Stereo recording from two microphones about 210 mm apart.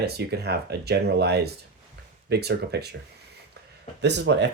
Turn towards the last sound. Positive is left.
turn(degrees=-55)  # may be behind; listen again after turning